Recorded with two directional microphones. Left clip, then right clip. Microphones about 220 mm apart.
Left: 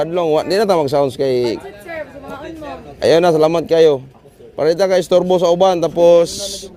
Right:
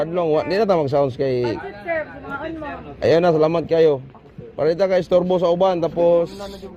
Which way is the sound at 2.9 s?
50° left (ahead or behind).